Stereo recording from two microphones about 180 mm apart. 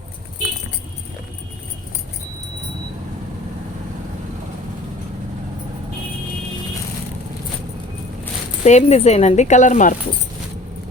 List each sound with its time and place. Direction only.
8.6 s speech: 40° left (ahead or behind)